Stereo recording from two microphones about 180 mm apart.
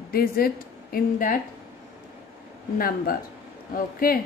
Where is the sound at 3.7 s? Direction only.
55° left (ahead or behind).